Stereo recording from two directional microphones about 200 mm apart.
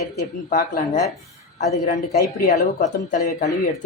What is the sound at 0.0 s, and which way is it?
Speech, 40° left (ahead or behind).